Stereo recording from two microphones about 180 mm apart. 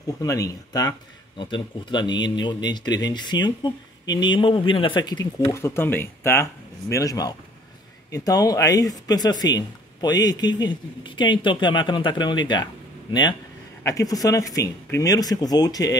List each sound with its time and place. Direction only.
0.0 s a man's voice: 20° left (ahead or behind)
13.8 s a man's voice: 20° left (ahead or behind)